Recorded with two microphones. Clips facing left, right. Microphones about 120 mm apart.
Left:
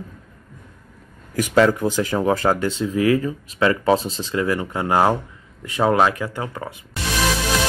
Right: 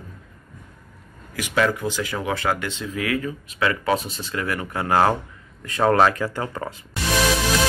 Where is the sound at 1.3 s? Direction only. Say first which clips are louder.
Left 6 dB; 40° left (ahead or behind); by 5.1 s 20° left (ahead or behind).